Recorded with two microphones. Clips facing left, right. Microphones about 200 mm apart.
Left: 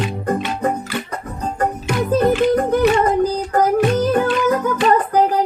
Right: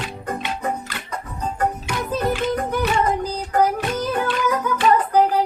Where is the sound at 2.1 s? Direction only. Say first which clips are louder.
Left 7 dB; 45° left (ahead or behind).